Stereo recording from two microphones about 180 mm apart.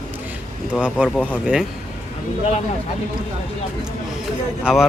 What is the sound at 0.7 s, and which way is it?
Speech, 5° right (ahead or behind).